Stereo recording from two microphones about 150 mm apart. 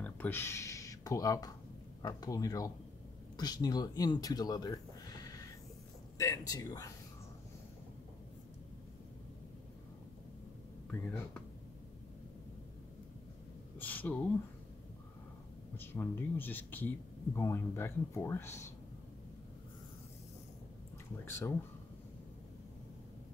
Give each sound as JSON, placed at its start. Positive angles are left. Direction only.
{"t": 0.0, "sound": "a man's voice", "side_deg": 15}
{"t": 10.9, "sound": "speech", "side_deg": 10}
{"t": 13.7, "sound": "a sound", "side_deg": 10}
{"t": 15.7, "sound": "speech", "side_deg": 15}
{"t": 21.3, "sound": "speech", "side_deg": 15}